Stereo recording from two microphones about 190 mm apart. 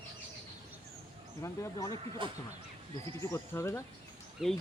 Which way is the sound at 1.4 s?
15° left (ahead or behind).